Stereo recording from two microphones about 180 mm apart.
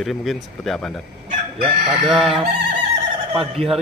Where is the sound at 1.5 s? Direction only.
30° right (ahead or behind).